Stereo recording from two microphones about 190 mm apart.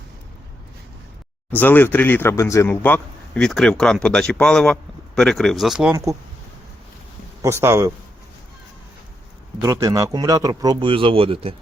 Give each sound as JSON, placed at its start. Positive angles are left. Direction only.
{"t": 1.5, "sound": "speech", "side_deg": 10}
{"t": 7.4, "sound": "speech", "side_deg": -15}
{"t": 9.6, "sound": "speech", "side_deg": -20}